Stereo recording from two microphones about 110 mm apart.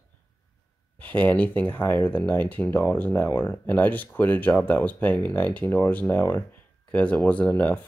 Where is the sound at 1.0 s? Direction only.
15° left (ahead or behind).